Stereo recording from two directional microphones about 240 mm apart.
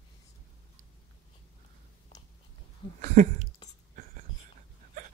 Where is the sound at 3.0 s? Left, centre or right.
Right.